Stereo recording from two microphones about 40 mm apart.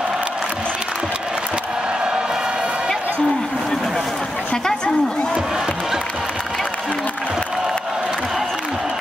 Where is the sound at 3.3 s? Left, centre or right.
Centre.